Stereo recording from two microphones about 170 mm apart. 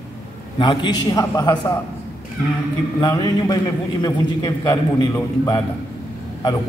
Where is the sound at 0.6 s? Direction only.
25° left (ahead or behind).